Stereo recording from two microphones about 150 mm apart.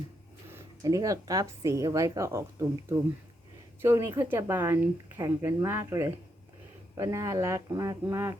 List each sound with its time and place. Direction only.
0.5 s speech: 20° right (ahead or behind)